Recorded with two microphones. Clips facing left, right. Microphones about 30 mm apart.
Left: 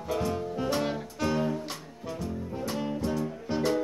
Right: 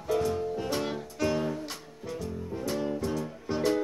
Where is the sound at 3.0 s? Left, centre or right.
Centre.